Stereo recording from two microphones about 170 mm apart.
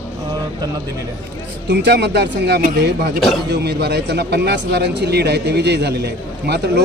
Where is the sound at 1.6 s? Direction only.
85° right.